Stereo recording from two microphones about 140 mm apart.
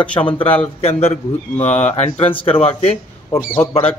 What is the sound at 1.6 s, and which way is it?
Speech, 55° left (ahead or behind).